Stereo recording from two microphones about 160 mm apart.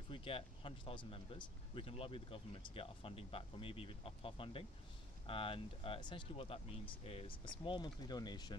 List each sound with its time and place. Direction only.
0.1 s speech: 35° left (ahead or behind)